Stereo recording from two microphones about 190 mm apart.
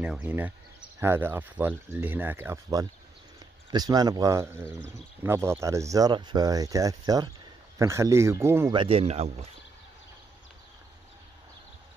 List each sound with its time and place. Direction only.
0.0 s speech: 5° right (ahead or behind)
8.7 s speech: 30° right (ahead or behind)